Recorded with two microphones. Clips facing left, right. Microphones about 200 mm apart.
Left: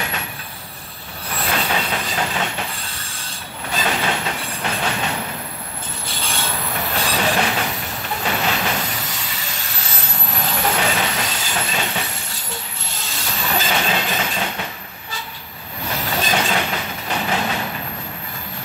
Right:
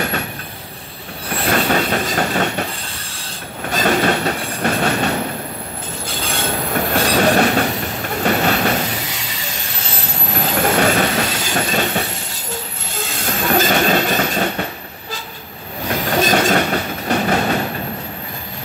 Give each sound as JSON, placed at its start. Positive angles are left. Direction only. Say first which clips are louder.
{"t": 1.5, "sound": "train", "louder": "right 6 dB", "side_deg": -50}
{"t": 3.6, "sound": "train", "louder": "right 6 dB", "side_deg": -45}
{"t": 6.2, "sound": "train", "louder": "right 5 dB", "side_deg": -50}
{"t": 10.6, "sound": "train", "louder": "right 6 dB", "side_deg": -50}
{"t": 15.9, "sound": "train", "louder": "right 6 dB", "side_deg": -50}